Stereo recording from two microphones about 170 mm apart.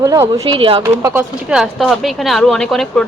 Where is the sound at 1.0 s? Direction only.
15° right (ahead or behind).